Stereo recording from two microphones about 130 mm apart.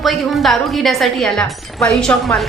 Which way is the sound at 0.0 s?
Centre (ahead or behind).